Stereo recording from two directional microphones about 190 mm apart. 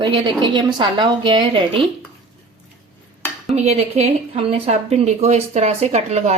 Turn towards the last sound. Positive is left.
turn(degrees=-35)  # may be behind; listen again after turning